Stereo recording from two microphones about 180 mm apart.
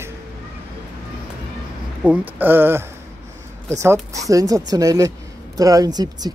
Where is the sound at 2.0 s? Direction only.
10° right (ahead or behind).